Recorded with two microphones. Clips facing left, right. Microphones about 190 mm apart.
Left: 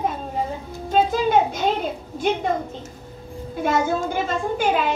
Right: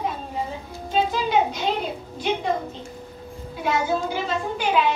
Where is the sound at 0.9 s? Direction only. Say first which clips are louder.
Left 4 dB; 50° left (ahead or behind).